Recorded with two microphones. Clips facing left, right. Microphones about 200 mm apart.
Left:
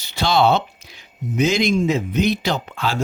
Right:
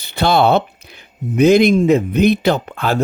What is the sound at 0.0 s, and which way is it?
Speech, 60° right (ahead or behind).